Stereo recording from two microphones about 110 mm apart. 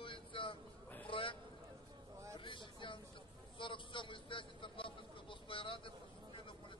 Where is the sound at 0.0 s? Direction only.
50° left (ahead or behind).